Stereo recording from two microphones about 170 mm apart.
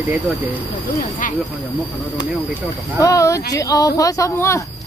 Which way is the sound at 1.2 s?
55° left (ahead or behind).